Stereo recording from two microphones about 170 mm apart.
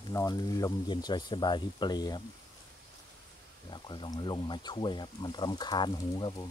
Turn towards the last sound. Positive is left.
turn(degrees=25)  # may be behind; listen again after turning